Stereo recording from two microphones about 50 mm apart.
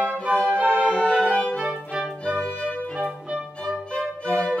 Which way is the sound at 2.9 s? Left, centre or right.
Right.